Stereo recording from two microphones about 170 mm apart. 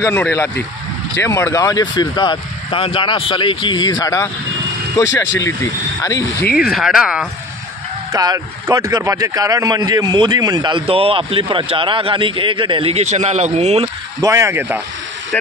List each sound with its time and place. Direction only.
0.0 s speech: 15° left (ahead or behind)
6.5 s speech: 5° right (ahead or behind)
8.1 s a man's voice: 20° right (ahead or behind); by 13.8 s 40° right (ahead or behind)
14.2 s speech: 15° right (ahead or behind)